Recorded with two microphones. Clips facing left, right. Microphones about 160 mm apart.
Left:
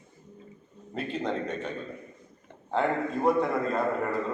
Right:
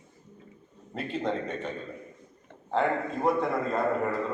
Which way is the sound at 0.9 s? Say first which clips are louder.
Even; centre (ahead or behind).